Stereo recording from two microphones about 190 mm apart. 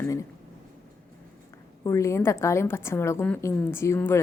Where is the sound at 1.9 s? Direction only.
15° left (ahead or behind).